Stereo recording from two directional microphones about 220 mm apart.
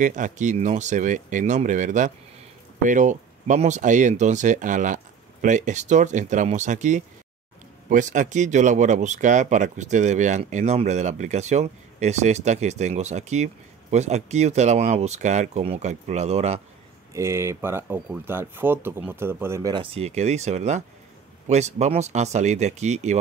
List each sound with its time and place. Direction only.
0.0 s speech: 35° right (ahead or behind)
17.1 s speech: 10° right (ahead or behind); by 23.1 s 30° right (ahead or behind)